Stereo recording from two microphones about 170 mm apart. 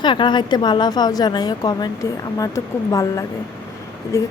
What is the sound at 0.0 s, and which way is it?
Speech, 25° left (ahead or behind).